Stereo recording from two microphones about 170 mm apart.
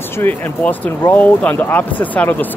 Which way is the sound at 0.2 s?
10° left (ahead or behind).